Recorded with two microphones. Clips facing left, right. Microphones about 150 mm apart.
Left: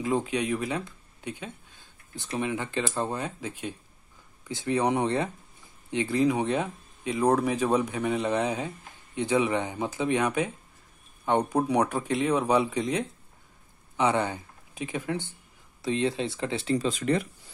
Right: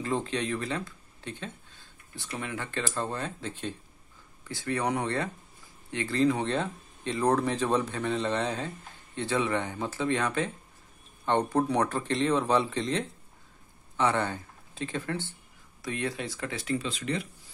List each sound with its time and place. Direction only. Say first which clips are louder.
0.0 s speech: left 3 dB; 10° left (ahead or behind); by 16.8 s 30° left (ahead or behind)
16.8 s speech: left 6 dB; 45° left (ahead or behind)